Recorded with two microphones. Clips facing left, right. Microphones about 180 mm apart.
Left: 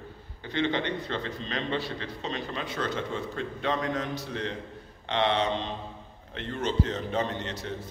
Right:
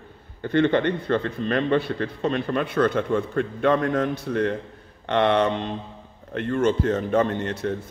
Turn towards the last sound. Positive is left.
turn(degrees=-50)  # may be behind; listen again after turning